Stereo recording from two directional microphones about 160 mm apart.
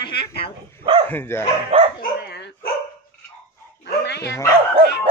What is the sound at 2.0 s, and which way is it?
Dog, 90° left.